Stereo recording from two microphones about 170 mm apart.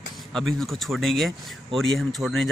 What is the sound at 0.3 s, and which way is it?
Speech, centre (ahead or behind).